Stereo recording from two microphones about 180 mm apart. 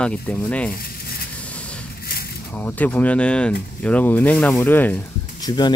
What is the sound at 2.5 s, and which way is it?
Speech, 10° left (ahead or behind).